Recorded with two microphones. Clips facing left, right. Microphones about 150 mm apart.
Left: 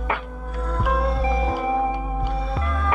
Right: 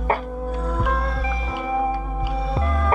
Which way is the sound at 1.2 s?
35° left (ahead or behind).